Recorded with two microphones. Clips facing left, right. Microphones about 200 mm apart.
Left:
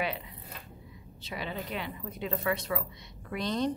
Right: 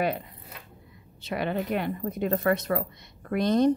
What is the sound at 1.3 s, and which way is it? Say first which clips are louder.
A woman's voice: right 9 dB; 55° right (ahead or behind).